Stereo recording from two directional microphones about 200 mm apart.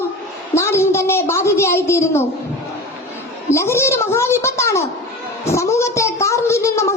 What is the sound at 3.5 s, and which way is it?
A woman's voice, 15° left (ahead or behind).